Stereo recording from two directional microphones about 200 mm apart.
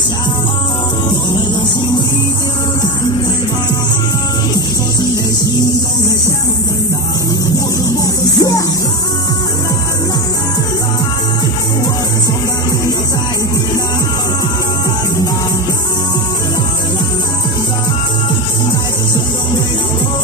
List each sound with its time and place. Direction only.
8.4 s music: 20° left (ahead or behind)